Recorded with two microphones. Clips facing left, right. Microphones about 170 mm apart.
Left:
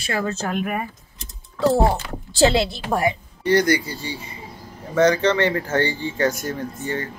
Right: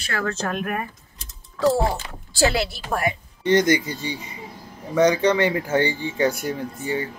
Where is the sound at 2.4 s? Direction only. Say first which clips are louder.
Left 4 dB; 20° left (ahead or behind).